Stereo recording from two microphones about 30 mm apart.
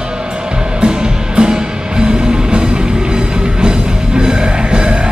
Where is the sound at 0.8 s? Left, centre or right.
Right.